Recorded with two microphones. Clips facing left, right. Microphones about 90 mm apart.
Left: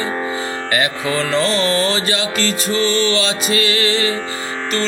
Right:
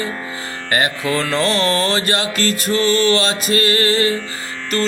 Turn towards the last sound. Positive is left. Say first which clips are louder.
# right 2 dB
turn(degrees=-45)  # may be behind; listen again after turning